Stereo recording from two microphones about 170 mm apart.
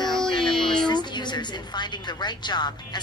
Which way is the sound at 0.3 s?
30° left (ahead or behind).